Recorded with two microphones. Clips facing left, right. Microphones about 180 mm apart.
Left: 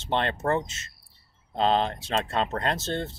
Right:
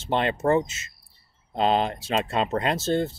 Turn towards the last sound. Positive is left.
turn(degrees=-5)  # may be behind; listen again after turning